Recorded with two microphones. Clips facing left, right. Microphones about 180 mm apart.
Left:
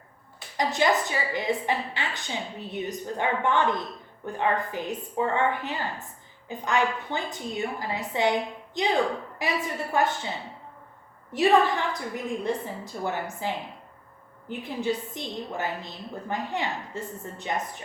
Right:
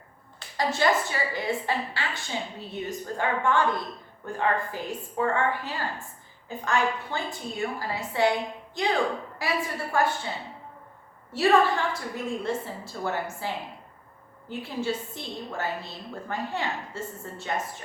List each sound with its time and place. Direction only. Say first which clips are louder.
0.5 s a woman's voice: even; 15° left (ahead or behind)
11.3 s a woman's voice: left 1 dB; 15° left (ahead or behind)
14.6 s a woman's voice: left 1 dB; 15° left (ahead or behind)